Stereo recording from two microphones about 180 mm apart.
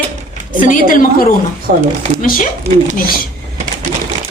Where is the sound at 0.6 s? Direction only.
50° left (ahead or behind).